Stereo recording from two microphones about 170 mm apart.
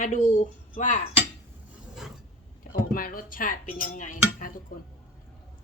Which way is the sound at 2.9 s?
55° left (ahead or behind).